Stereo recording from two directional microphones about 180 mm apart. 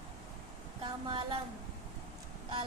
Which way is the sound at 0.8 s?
25° right (ahead or behind).